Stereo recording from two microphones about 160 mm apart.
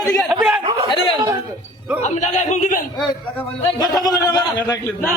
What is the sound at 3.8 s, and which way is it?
A man's voice, 25° left (ahead or behind).